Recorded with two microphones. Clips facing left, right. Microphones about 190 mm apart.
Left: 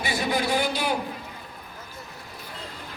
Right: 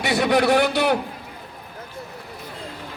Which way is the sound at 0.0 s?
70° right (ahead or behind).